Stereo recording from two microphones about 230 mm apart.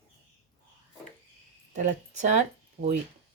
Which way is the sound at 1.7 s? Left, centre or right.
Right.